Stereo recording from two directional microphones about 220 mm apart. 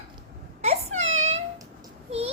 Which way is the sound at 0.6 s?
30° right (ahead or behind).